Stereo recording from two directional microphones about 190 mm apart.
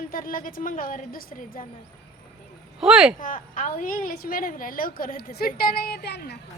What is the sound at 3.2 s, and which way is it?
A woman's voice, 45° left (ahead or behind).